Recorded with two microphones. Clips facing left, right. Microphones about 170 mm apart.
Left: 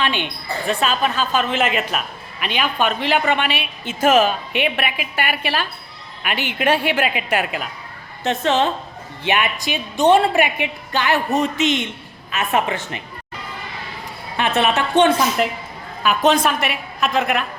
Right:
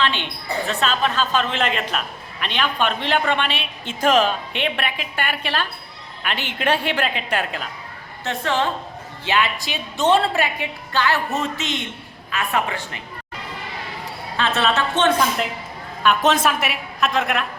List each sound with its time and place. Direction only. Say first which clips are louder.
0.0 s a woman's voice: left 1 dB; 15° left (ahead or behind)
8.2 s a woman's voice: left 4 dB; 20° left (ahead or behind)
14.3 s a woman's voice: left 2 dB; 15° left (ahead or behind)
16.0 s a woman's voice: left 1 dB; centre (ahead or behind)